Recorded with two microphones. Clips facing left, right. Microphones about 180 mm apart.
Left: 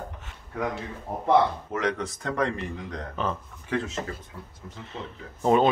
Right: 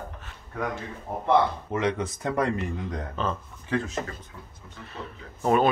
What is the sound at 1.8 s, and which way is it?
Speech, 5° right (ahead or behind).